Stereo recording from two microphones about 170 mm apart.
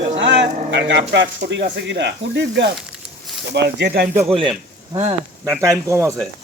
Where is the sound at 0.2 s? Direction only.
90° right; by 4.1 s 70° right (ahead or behind).